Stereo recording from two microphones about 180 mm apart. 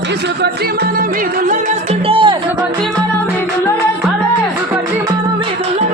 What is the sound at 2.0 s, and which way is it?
Music, 30° right (ahead or behind).